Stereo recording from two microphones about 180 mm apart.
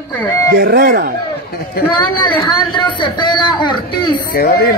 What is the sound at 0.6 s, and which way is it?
Speech, 60° right (ahead or behind).